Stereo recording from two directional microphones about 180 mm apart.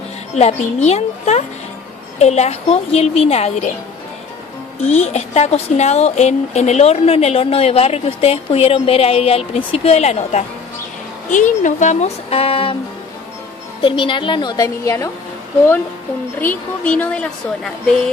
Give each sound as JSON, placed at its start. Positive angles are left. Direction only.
{"t": 0.4, "sound": "speech", "side_deg": 35}
{"t": 4.8, "sound": "speech", "side_deg": 35}
{"t": 13.8, "sound": "a woman's voice", "side_deg": 30}
{"t": 16.3, "sound": "a woman's voice", "side_deg": 10}